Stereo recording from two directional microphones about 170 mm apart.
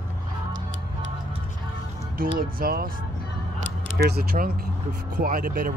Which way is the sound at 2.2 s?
60° right (ahead or behind).